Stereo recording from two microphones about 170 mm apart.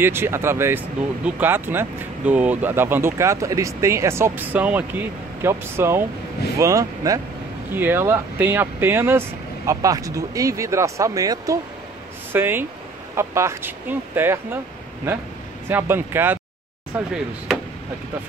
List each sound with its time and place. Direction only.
0.0 s speech: 15° right (ahead or behind)
15.7 s speech: 15° right (ahead or behind)